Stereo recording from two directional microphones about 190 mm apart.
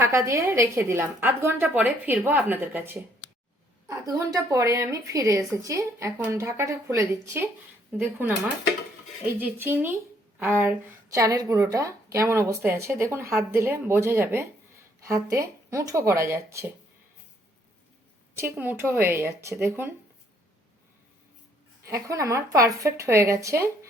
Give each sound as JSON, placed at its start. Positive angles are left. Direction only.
{"t": 0.0, "sound": "speech", "side_deg": -15}
{"t": 4.2, "sound": "speech", "side_deg": -15}
{"t": 18.3, "sound": "speech", "side_deg": -10}
{"t": 21.8, "sound": "speech", "side_deg": -15}